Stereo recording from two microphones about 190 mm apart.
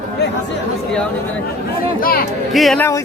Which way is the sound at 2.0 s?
50° left (ahead or behind).